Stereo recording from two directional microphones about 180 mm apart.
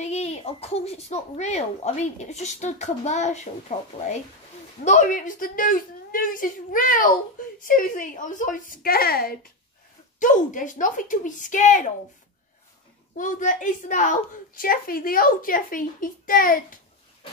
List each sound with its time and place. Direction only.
0.0 s speech: 35° left (ahead or behind)
4.8 s a woman's voice: 45° left (ahead or behind)
10.1 s a woman's voice: 45° left (ahead or behind)
13.1 s a woman's voice: 45° left (ahead or behind)